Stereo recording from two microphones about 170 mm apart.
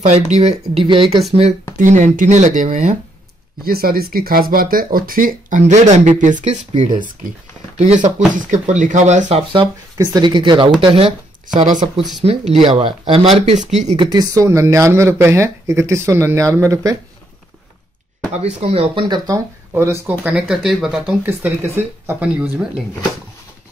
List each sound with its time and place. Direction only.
0.0 s speech: 40° right (ahead or behind)
1.8 s speech: 45° right (ahead or behind)
3.6 s speech: 60° right (ahead or behind); by 9.4 s 45° right (ahead or behind)
9.5 s speech: 25° right (ahead or behind)
12.6 s speech: 30° right (ahead or behind)
13.9 s speech: 20° right (ahead or behind)
18.3 s speech: 35° right (ahead or behind); by 21.1 s centre (ahead or behind)
21.3 s speech: 15° right (ahead or behind)